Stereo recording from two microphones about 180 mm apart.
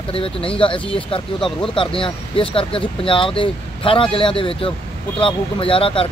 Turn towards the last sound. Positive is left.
turn(degrees=30)  # may be behind; listen again after turning